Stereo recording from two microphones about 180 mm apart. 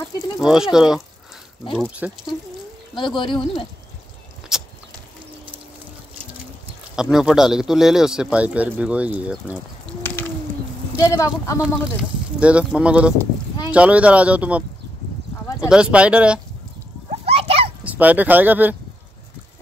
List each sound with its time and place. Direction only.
0.4 s a man's voice: 5° right (ahead or behind)
2.9 s speech: 25° left (ahead or behind)
4.5 s livestock: 5° right (ahead or behind)
7.0 s a man's voice: 5° right (ahead or behind)
11.0 s speech: 20° left (ahead or behind)
12.0 s speech: 5° right (ahead or behind)
15.7 s a man's voice: 5° right (ahead or behind)
17.3 s a sound: 35° right (ahead or behind)
17.8 s speech: 10° right (ahead or behind)